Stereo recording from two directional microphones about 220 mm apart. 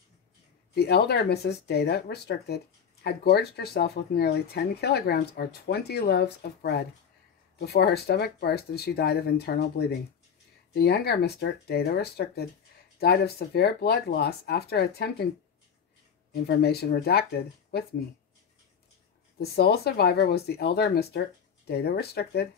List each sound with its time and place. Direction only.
0.7 s speech: 50° left (ahead or behind)
16.4 s speech: 45° left (ahead or behind)
19.4 s speech: 45° left (ahead or behind)